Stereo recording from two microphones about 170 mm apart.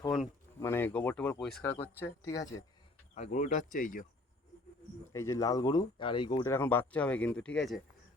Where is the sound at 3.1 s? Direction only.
45° left (ahead or behind).